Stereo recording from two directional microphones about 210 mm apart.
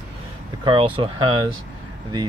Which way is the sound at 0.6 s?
25° right (ahead or behind).